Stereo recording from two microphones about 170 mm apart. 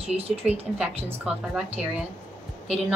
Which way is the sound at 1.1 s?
5° right (ahead or behind).